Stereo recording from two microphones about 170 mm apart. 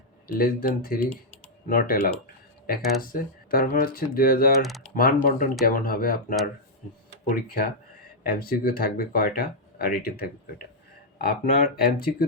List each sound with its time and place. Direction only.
0.3 s speech: 60° left (ahead or behind)
4.6 s speech: centre (ahead or behind)
4.9 s speech: 55° left (ahead or behind)